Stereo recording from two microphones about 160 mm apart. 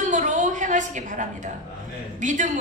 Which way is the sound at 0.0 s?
50° right (ahead or behind).